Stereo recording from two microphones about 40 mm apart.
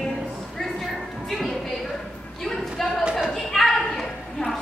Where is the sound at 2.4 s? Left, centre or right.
Centre.